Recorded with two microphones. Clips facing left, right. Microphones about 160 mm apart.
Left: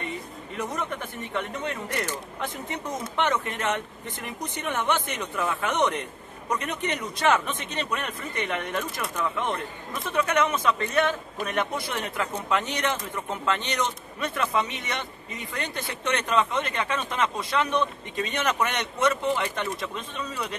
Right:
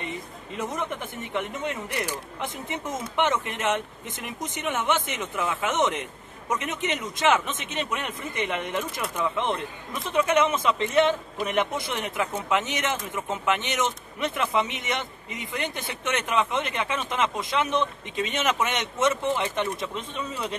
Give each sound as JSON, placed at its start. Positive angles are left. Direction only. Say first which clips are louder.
{"t": 0.6, "sound": "speech", "louder": "right 1 dB", "side_deg": -15}